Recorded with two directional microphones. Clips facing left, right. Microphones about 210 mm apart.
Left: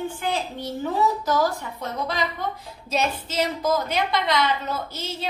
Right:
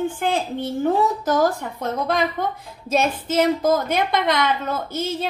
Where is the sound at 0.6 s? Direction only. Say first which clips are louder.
Right 4 dB; 50° right (ahead or behind).